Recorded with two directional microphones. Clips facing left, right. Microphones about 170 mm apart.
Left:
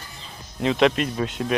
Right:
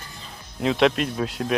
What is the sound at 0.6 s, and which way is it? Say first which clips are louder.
Speech: even; centre (ahead or behind).